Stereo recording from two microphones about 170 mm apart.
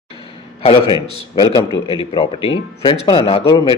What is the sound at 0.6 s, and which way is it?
Speech, 30° left (ahead or behind).